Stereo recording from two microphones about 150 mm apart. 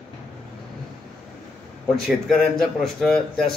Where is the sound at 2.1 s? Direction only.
Centre (ahead or behind).